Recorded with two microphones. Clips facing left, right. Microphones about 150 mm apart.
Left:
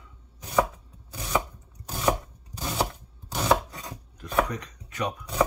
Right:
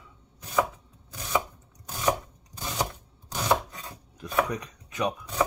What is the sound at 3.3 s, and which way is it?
Chopping, 10° left (ahead or behind).